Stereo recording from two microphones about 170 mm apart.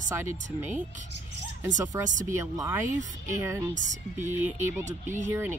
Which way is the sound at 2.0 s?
45° right (ahead or behind).